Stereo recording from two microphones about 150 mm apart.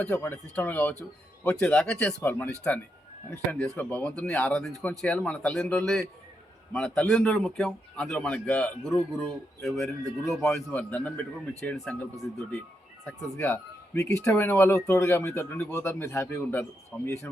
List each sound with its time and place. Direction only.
0.0 s speech: 10° left (ahead or behind)
13.9 s speech: 20° left (ahead or behind)